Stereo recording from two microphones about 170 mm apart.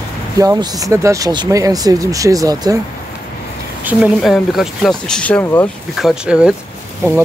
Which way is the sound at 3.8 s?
10° right (ahead or behind).